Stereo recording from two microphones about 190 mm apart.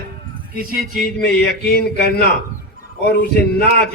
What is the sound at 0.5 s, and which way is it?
Speech, 50° right (ahead or behind).